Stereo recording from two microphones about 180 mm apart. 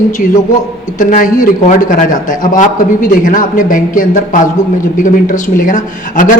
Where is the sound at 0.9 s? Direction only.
45° left (ahead or behind).